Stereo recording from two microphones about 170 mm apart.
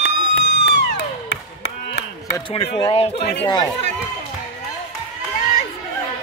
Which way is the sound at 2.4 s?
30° left (ahead or behind).